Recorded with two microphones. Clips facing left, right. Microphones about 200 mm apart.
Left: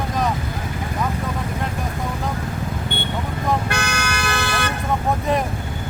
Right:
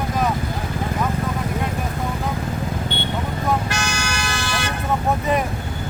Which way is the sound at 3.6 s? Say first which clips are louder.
Left 1 dB; 60° left (ahead or behind).